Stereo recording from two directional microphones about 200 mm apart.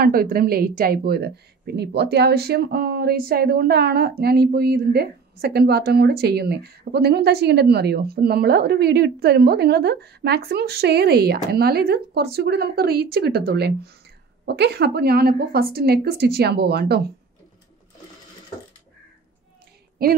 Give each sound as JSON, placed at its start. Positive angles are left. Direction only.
{"t": 0.0, "sound": "speech", "side_deg": -45}
{"t": 20.0, "sound": "speech", "side_deg": -50}